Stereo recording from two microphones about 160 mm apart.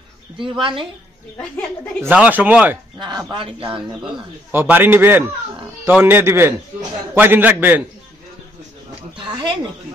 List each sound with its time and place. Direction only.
0.4 s speech: 30° right (ahead or behind)
2.0 s speech: 10° right (ahead or behind)
3.0 s speech: 25° right (ahead or behind)
4.0 s speech: 10° right (ahead or behind)
9.1 s speech: 30° right (ahead or behind)